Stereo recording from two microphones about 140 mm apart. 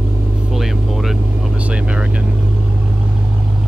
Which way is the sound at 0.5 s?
Centre (ahead or behind).